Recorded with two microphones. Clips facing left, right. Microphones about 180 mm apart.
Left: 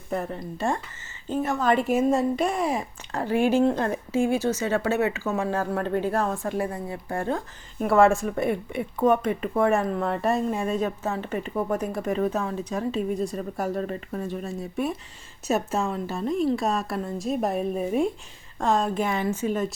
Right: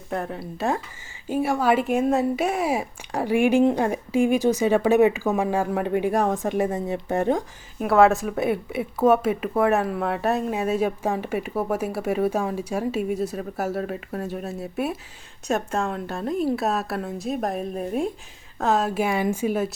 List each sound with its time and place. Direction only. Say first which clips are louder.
0.1 s speech: even; centre (ahead or behind); by 7.4 s 20° right (ahead or behind)
7.8 s speech: right 1 dB; centre (ahead or behind)